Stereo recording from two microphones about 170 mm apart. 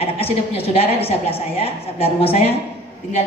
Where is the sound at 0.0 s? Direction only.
35° left (ahead or behind).